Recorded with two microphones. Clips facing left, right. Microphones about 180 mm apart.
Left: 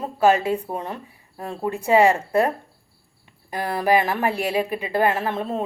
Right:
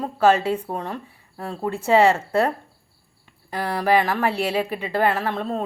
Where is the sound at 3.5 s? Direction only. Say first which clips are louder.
Even; 15° left (ahead or behind).